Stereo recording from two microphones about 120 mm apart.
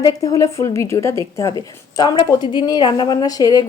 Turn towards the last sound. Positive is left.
turn(degrees=30)  # may be behind; listen again after turning